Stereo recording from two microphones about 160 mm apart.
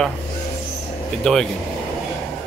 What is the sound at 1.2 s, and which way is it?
Speech, 5° left (ahead or behind).